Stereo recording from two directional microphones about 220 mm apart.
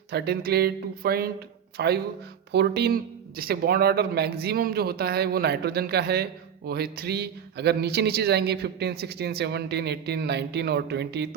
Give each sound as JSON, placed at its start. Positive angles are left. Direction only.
{"t": 0.1, "sound": "speech", "side_deg": -45}